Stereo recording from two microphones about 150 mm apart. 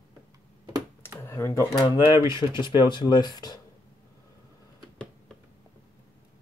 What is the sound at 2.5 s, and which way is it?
Speech, 30° left (ahead or behind).